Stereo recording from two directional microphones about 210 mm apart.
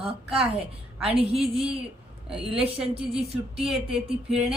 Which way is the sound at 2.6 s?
25° right (ahead or behind).